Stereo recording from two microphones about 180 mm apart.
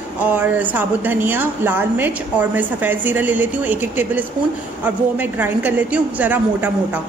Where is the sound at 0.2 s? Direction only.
10° right (ahead or behind).